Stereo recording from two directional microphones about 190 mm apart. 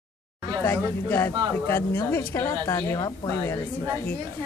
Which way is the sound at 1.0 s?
10° left (ahead or behind).